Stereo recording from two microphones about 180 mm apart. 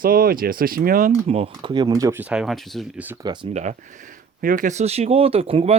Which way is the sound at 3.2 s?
25° right (ahead or behind).